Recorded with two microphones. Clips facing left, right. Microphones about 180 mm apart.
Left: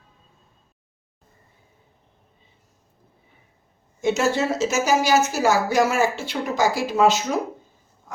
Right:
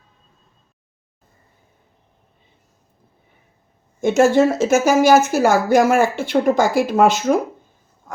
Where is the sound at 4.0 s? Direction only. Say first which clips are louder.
Right 7 dB; 50° right (ahead or behind).